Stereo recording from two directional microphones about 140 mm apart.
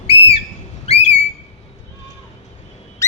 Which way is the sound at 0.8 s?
50° left (ahead or behind).